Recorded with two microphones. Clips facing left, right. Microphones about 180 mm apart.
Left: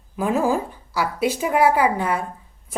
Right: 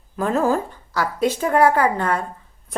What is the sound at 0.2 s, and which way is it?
A woman's voice, 10° left (ahead or behind).